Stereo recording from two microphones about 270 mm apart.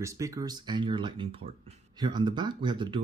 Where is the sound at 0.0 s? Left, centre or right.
Centre.